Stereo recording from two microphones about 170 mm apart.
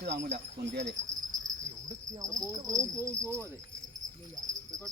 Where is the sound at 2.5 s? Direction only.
20° right (ahead or behind).